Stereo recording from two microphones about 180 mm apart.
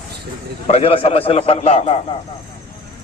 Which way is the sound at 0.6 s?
35° left (ahead or behind).